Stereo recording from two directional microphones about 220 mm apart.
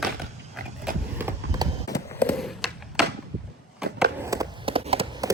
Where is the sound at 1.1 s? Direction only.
15° right (ahead or behind).